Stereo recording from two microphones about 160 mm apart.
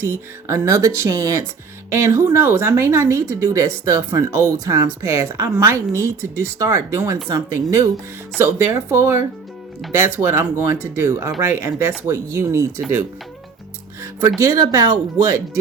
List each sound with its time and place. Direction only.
0.0 s a woman's voice: 20° right (ahead or behind)
14.0 s speech: 20° right (ahead or behind)